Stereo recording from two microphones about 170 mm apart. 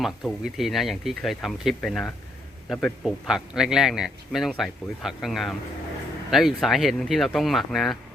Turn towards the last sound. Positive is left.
turn(degrees=0)  # may be behind; listen again after turning